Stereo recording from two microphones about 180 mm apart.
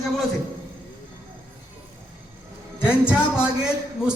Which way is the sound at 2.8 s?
5° right (ahead or behind).